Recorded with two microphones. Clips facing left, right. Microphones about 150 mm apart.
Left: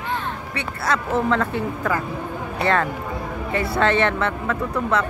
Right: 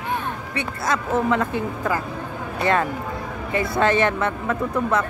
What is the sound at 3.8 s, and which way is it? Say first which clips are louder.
Speech: even; 15° right (ahead or behind).